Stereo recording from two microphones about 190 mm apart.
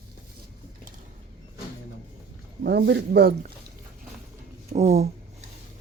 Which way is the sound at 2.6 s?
65° right (ahead or behind).